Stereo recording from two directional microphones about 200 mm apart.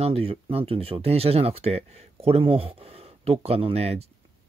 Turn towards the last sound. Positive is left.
turn(degrees=-30)  # may be behind; listen again after turning